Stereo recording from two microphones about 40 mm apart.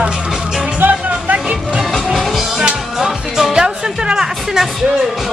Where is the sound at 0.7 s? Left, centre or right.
Right.